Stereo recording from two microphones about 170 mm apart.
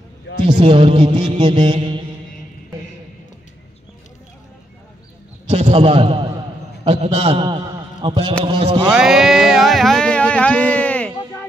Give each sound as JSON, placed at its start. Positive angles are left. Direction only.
{"t": 0.4, "sound": "music", "side_deg": -30}
{"t": 5.5, "sound": "a man's voice", "side_deg": -35}
{"t": 6.9, "sound": "music", "side_deg": -40}
{"t": 8.9, "sound": "a sound", "side_deg": 0}